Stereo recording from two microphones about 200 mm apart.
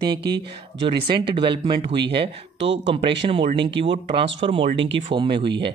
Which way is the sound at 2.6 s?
65° right (ahead or behind).